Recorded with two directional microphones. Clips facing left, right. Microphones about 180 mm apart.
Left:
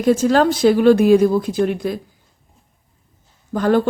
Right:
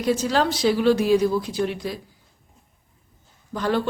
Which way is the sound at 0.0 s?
50° left (ahead or behind).